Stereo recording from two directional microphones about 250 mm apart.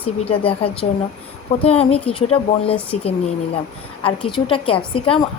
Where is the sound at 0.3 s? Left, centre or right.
Left.